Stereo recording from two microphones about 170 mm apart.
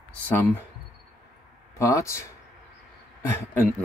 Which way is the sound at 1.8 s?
20° left (ahead or behind).